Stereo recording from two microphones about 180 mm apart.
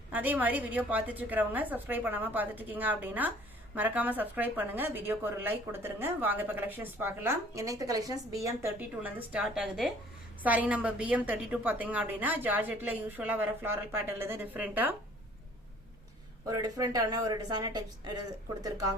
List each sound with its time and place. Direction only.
0.1 s a woman's voice: 10° right (ahead or behind)
16.5 s a woman's voice: 20° right (ahead or behind)